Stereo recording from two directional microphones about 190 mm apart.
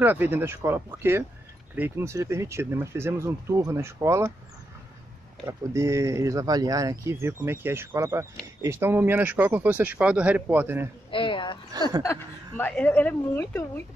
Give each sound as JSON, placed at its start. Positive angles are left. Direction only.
{"t": 0.0, "sound": "speech", "side_deg": -10}
{"t": 5.5, "sound": "speech", "side_deg": -15}
{"t": 11.1, "sound": "a sound", "side_deg": 25}
{"t": 12.0, "sound": "a woman's voice", "side_deg": 15}